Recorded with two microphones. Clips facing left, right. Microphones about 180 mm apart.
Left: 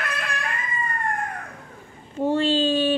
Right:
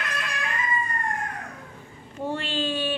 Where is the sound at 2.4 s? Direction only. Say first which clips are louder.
Left 8 dB; 35° left (ahead or behind).